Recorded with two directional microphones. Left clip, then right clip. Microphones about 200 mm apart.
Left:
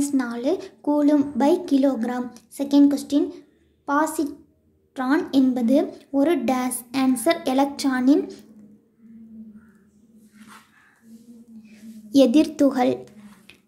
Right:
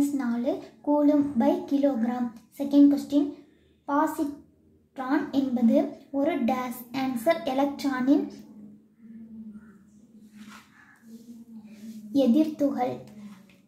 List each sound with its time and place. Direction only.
0.2 s a woman's voice: 35° left (ahead or behind)
12.1 s a woman's voice: 35° left (ahead or behind)